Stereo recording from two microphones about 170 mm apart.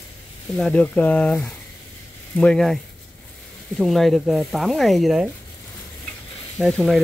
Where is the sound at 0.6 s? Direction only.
5° left (ahead or behind).